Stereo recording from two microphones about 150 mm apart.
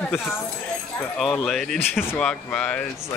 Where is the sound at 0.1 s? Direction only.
5° right (ahead or behind).